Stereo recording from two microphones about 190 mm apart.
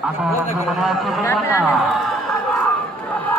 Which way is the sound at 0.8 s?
Centre (ahead or behind).